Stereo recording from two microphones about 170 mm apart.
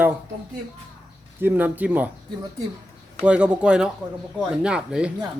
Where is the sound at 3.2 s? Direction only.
5° right (ahead or behind).